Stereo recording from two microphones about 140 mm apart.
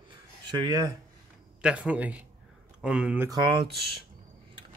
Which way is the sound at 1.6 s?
10° right (ahead or behind).